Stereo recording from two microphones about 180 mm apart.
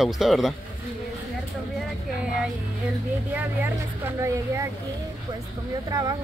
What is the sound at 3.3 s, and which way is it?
Speech, 15° right (ahead or behind).